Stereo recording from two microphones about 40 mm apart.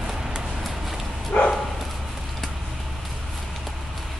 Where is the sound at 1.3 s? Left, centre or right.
Left.